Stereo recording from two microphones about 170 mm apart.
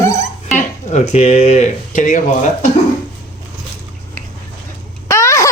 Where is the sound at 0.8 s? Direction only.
40° left (ahead or behind).